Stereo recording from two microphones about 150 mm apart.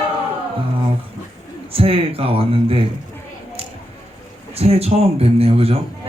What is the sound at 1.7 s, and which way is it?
A man's voice, 40° right (ahead or behind).